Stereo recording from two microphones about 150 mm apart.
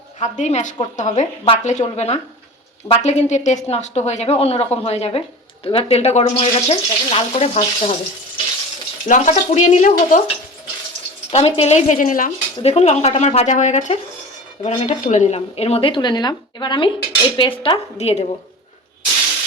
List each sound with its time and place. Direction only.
0.2 s speech: 50° left (ahead or behind)
9.0 s speech: 55° left (ahead or behind)
11.3 s speech: 40° left (ahead or behind); by 12.3 s 60° left (ahead or behind)
12.6 s speech: 45° left (ahead or behind)
17.9 s speech: 45° left (ahead or behind)